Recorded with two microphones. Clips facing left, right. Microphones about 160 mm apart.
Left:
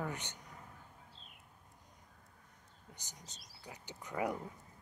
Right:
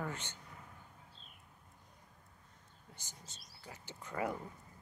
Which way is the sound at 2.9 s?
15° left (ahead or behind).